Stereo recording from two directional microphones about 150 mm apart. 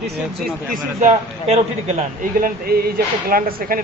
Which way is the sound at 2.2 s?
80° right.